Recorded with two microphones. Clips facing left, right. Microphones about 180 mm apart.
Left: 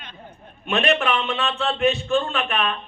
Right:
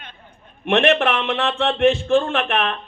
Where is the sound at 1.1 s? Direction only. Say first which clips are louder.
Right 3 dB; 75° right (ahead or behind).